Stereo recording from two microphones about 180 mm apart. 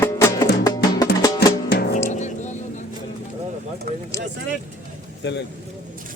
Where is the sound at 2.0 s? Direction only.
40° left (ahead or behind).